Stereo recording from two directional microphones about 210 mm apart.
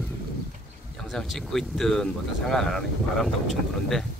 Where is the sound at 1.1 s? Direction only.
Centre (ahead or behind).